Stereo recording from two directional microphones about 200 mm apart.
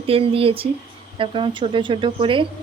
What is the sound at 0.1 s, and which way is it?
A woman's voice, 30° right (ahead or behind).